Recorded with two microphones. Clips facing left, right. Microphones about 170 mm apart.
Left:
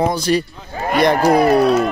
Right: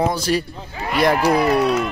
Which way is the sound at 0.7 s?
40° left (ahead or behind).